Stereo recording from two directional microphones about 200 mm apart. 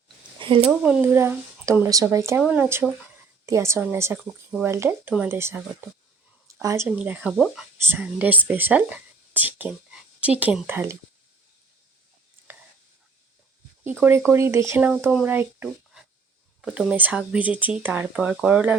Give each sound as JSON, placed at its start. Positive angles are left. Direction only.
{"t": 0.3, "sound": "a sound", "side_deg": -25}
{"t": 0.6, "sound": "speech", "side_deg": -5}
{"t": 14.0, "sound": "speech", "side_deg": -10}